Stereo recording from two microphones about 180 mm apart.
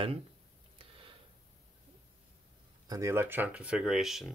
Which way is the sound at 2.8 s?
15° right (ahead or behind).